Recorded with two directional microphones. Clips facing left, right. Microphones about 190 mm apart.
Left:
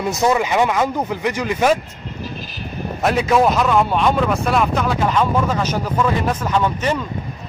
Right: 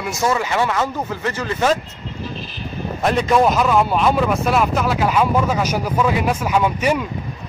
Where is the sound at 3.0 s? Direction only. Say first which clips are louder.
Even; 5° left (ahead or behind).